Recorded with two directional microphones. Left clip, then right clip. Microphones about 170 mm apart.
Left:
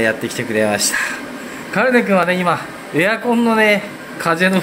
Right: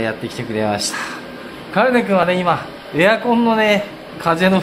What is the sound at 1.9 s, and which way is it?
A man's voice, 15° left (ahead or behind).